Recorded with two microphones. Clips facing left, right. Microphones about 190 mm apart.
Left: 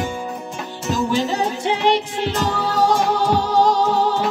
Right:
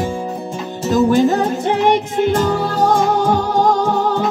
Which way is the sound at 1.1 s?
50° right (ahead or behind).